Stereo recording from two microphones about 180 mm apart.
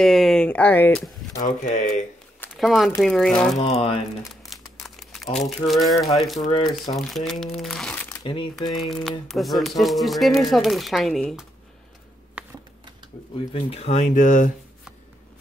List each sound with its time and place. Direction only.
0.0 s speech: centre (ahead or behind)
1.4 s speech: 45° left (ahead or behind)
2.5 s speech: centre (ahead or behind)
3.5 s speech: 35° left (ahead or behind)
4.5 s crumpling: centre (ahead or behind)
5.3 s speech: centre (ahead or behind)
8.2 s speech: 30° left (ahead or behind)
8.8 s speech: centre (ahead or behind)
12.4 s computer keyboard: 5° right (ahead or behind)
13.5 s speech: 30° left (ahead or behind)